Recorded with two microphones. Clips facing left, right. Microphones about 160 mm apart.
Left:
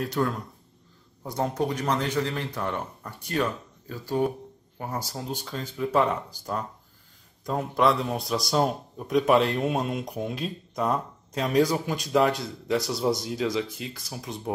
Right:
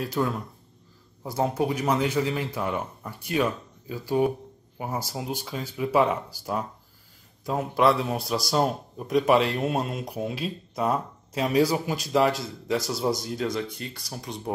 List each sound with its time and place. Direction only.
0.0 s a man's voice: 5° right (ahead or behind)